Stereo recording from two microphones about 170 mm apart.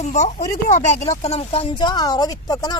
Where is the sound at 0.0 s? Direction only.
45° left (ahead or behind).